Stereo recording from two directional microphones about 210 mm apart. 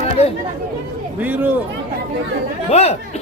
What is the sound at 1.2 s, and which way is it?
Speech, 10° right (ahead or behind).